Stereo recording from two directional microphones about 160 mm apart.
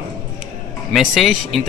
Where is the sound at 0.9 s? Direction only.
Centre (ahead or behind).